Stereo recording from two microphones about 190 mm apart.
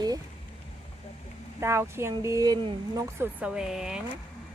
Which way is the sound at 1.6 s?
15° right (ahead or behind).